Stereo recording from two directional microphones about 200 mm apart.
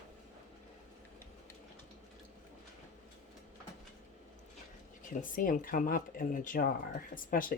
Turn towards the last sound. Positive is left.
turn(degrees=45)  # may be behind; listen again after turning